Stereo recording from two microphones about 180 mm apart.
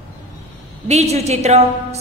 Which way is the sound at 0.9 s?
40° right (ahead or behind).